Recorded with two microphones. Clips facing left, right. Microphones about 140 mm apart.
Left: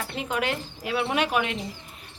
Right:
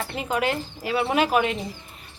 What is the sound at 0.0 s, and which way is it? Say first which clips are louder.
A woman's voice: right 3 dB; 5° right (ahead or behind).